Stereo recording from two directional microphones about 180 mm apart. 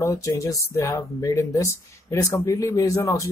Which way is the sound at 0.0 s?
20° left (ahead or behind).